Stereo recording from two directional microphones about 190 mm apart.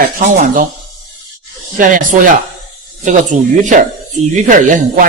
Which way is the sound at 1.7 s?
45° right (ahead or behind).